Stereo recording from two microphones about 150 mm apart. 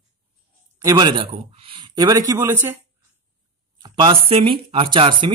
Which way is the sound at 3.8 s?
35° right (ahead or behind).